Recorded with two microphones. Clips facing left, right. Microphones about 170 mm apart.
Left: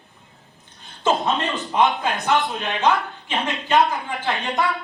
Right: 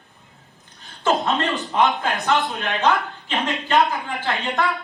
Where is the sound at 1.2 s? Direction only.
20° left (ahead or behind).